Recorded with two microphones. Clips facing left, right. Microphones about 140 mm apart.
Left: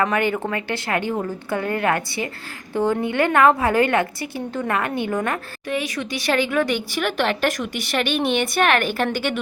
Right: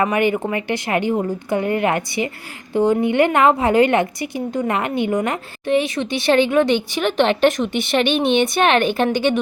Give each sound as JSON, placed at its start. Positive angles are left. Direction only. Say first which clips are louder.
{"t": 0.0, "sound": "a woman's voice", "louder": "right 3 dB", "side_deg": -15}